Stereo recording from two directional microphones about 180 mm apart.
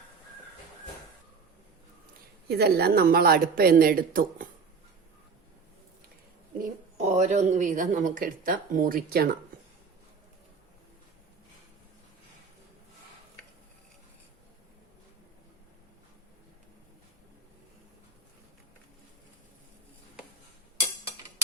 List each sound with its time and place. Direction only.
2.5 s speech: 60° right (ahead or behind)
6.6 s a woman's voice: 40° right (ahead or behind)